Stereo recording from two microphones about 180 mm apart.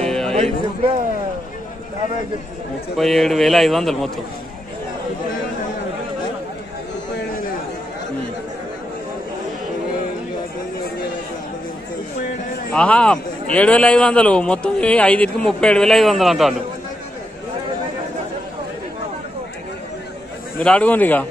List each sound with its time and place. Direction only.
0.1 s music: 5° left (ahead or behind)
3.0 s a man's voice: centre (ahead or behind)
12.7 s a man's voice: 5° left (ahead or behind)
20.5 s speech: 10° left (ahead or behind)